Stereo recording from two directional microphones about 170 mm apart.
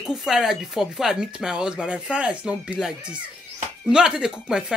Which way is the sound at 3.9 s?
5° right (ahead or behind).